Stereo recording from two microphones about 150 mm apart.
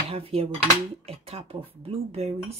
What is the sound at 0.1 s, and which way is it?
Dishes, 40° right (ahead or behind).